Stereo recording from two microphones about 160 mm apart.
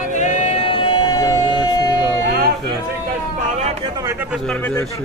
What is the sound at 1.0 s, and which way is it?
Music, 25° left (ahead or behind).